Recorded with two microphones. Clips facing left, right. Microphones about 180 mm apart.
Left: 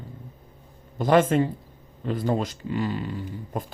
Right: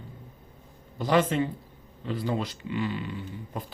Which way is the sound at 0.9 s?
50° left (ahead or behind).